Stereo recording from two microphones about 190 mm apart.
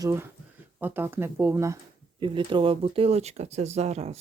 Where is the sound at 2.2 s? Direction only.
25° right (ahead or behind).